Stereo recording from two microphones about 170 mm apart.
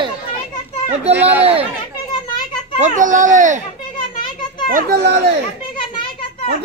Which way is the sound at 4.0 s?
30° left (ahead or behind).